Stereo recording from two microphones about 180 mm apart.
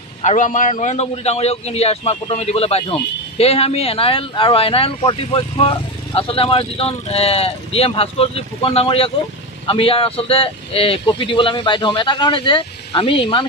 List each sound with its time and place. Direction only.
0.2 s speech: 40° left (ahead or behind); by 13.5 s 25° left (ahead or behind)